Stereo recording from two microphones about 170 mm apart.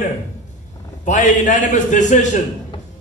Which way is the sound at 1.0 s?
45° left (ahead or behind).